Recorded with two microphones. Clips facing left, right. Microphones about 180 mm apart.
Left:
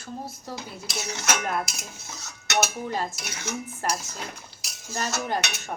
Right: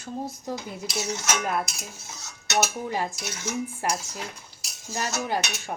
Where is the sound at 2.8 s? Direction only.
15° right (ahead or behind).